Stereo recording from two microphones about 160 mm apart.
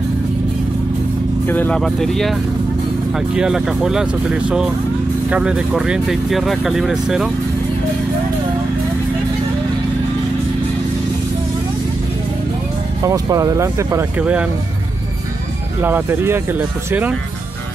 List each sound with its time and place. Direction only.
1.5 s speech: 10° left (ahead or behind)
13.0 s speech: 20° right (ahead or behind)
15.8 s speech: 15° right (ahead or behind)